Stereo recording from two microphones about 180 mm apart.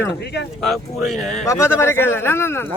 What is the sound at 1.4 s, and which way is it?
Speech, 15° left (ahead or behind).